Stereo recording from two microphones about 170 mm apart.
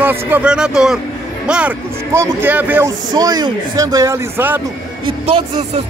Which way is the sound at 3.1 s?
25° right (ahead or behind).